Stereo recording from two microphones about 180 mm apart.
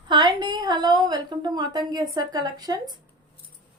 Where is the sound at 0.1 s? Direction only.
25° right (ahead or behind).